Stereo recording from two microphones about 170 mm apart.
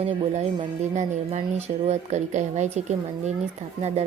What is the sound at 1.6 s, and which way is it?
Speech, 40° right (ahead or behind).